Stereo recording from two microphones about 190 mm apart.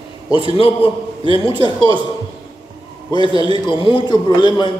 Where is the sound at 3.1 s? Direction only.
25° left (ahead or behind).